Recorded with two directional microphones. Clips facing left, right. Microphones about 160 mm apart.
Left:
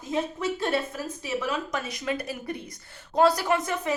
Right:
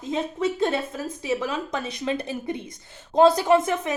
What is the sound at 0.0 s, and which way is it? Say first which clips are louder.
A woman's voice: right 3 dB; 25° right (ahead or behind).